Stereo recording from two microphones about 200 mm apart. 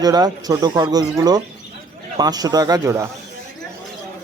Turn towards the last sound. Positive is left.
turn(degrees=-15)  # may be behind; listen again after turning